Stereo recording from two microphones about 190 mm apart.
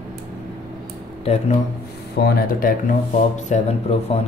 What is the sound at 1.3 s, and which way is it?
Speech, 30° left (ahead or behind).